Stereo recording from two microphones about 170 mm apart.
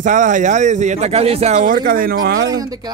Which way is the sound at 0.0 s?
50° right (ahead or behind).